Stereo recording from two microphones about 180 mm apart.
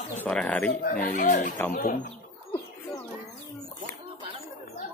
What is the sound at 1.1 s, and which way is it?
Speech, 45° left (ahead or behind).